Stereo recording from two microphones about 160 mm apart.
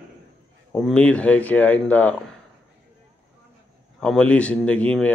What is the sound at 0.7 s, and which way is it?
Speech, 5° left (ahead or behind).